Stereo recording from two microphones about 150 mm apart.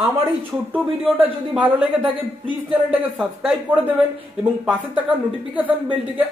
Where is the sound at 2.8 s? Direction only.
5° right (ahead or behind).